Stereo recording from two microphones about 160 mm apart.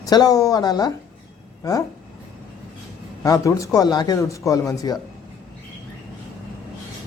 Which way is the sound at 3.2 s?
20° left (ahead or behind).